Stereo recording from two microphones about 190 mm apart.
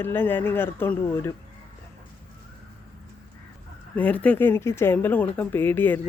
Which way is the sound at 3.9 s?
10° left (ahead or behind).